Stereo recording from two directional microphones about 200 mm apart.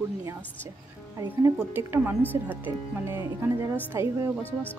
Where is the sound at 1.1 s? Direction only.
15° right (ahead or behind).